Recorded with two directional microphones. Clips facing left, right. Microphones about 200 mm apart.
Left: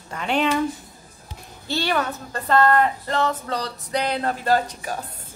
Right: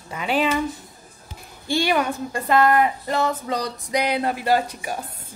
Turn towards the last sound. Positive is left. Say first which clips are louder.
# even
turn(degrees=-10)  # may be behind; listen again after turning